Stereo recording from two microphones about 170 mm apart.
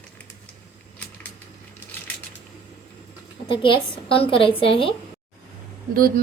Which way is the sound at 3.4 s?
30° left (ahead or behind).